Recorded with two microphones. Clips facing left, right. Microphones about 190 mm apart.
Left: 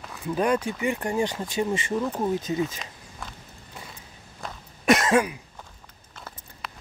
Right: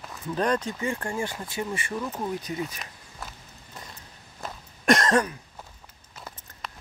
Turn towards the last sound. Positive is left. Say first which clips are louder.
# even
turn(degrees=0)  # may be behind; listen again after turning